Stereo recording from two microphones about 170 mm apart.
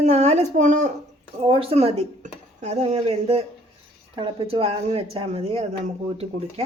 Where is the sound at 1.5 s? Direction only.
35° right (ahead or behind).